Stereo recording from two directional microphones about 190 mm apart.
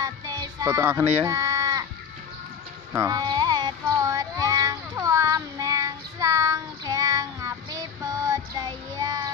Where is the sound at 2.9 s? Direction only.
20° right (ahead or behind).